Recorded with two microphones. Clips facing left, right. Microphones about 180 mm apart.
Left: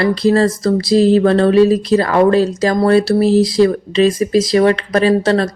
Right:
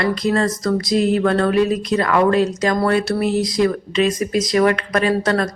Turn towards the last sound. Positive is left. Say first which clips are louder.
# left 5 dB
turn(degrees=30)  # may be behind; listen again after turning